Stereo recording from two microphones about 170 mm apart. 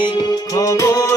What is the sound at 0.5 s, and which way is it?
Music, 20° left (ahead or behind).